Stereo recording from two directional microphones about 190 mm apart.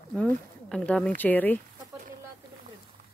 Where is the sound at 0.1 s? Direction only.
5° left (ahead or behind).